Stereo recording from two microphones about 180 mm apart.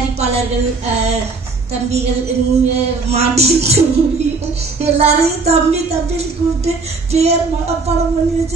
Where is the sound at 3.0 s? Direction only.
35° right (ahead or behind).